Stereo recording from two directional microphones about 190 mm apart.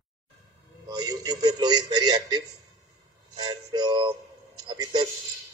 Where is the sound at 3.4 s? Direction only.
20° right (ahead or behind).